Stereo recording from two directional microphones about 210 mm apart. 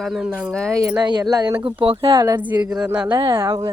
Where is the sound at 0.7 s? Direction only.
15° right (ahead or behind).